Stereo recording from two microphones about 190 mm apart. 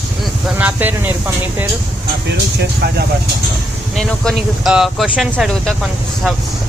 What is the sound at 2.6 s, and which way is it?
Speech, 60° right (ahead or behind).